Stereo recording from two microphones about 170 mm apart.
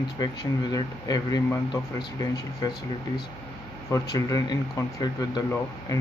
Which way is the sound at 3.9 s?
20° left (ahead or behind).